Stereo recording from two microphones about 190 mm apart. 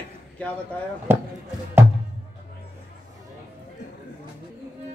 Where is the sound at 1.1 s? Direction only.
10° right (ahead or behind).